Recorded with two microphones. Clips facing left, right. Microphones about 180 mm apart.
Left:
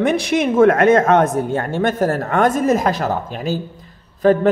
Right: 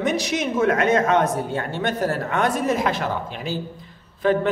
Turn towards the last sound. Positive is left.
turn(degrees=45)  # may be behind; listen again after turning